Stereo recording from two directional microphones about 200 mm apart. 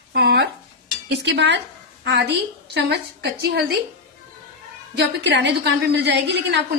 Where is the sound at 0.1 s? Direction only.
55° right (ahead or behind).